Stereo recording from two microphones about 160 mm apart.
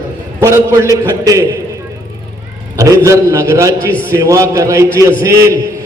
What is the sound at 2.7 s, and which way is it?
A man's voice, 20° right (ahead or behind).